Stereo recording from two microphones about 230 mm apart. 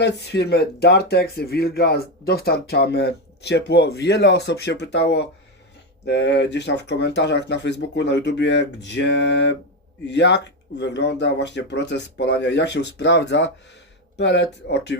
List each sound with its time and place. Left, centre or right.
0.0 s speech: left